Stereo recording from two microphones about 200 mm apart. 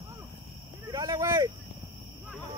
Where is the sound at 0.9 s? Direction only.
15° right (ahead or behind).